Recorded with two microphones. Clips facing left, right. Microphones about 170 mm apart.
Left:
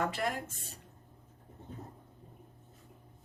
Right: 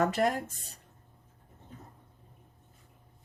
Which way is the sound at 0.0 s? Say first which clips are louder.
Right 6 dB; 45° right (ahead or behind).